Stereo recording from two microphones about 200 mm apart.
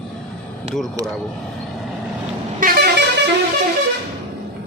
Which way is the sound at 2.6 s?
50° right (ahead or behind).